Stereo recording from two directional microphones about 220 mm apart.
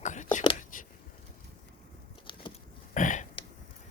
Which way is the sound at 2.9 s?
35° left (ahead or behind).